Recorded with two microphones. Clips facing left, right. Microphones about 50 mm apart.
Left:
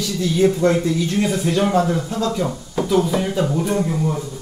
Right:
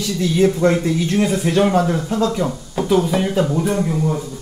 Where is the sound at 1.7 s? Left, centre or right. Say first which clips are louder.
Right 1 dB; right.